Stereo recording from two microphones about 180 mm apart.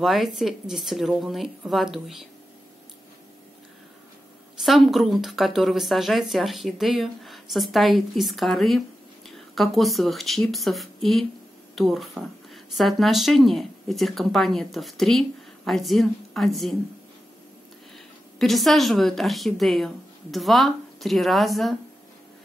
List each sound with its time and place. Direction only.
0.0 s a woman's voice: centre (ahead or behind)
4.6 s a woman's voice: centre (ahead or behind)
17.9 s a woman's voice: centre (ahead or behind)